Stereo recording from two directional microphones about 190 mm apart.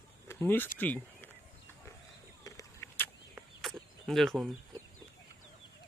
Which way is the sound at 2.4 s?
15° left (ahead or behind).